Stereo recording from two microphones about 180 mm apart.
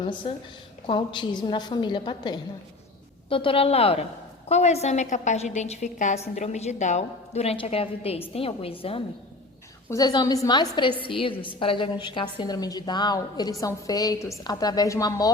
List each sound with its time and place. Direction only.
0.2 s a woman's voice: 30° left (ahead or behind)